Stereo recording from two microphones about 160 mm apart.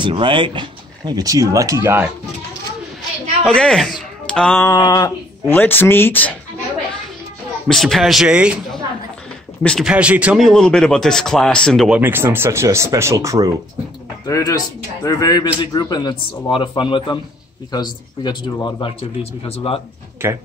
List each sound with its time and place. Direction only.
0.0 s speech: 30° right (ahead or behind); by 2.0 s 15° right (ahead or behind)
3.4 s a man's voice: 5° left (ahead or behind)
4.6 s speech: 20° left (ahead or behind)
5.5 s speech: 10° left (ahead or behind)
7.6 s speech: centre (ahead or behind)
9.6 s speech: 5° left (ahead or behind)
9.8 s speech: 5° right (ahead or behind)
11.9 s speech: 15° right (ahead or behind)
14.2 s speech: 20° left (ahead or behind)